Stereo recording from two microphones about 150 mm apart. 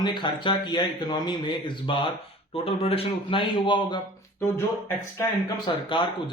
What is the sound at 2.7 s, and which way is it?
Speech, 40° left (ahead or behind).